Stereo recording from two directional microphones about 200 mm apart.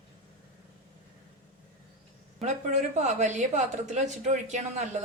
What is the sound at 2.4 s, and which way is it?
A woman's voice, 35° right (ahead or behind).